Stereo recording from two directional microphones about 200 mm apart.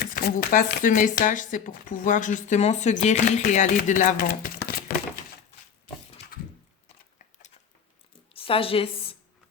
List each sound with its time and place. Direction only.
0.0 s speech: 50° left (ahead or behind)
8.3 s a woman's voice: 25° left (ahead or behind)